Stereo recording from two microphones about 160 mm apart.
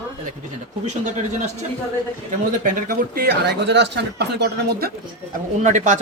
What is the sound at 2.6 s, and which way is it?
Speech, 60° right (ahead or behind).